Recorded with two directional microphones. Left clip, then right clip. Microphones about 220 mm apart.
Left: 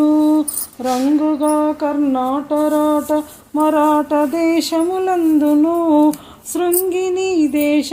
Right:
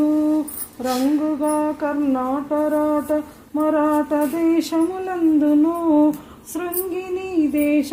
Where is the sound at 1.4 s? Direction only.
25° left (ahead or behind).